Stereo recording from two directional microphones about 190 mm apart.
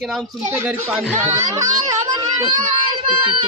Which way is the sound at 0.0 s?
Centre (ahead or behind).